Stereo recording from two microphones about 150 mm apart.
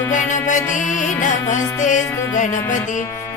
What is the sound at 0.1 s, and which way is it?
Music, 55° left (ahead or behind).